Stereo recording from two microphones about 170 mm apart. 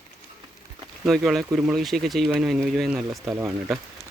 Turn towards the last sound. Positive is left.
turn(degrees=-15)  # may be behind; listen again after turning